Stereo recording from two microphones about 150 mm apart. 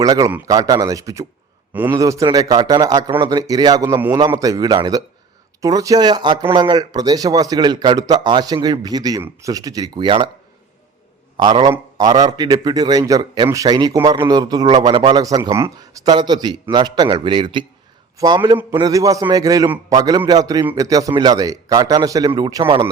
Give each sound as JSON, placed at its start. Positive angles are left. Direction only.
{"t": 0.0, "sound": "a man's voice", "side_deg": -25}
{"t": 11.3, "sound": "a man's voice", "side_deg": -30}
{"t": 18.8, "sound": "a man's voice", "side_deg": -25}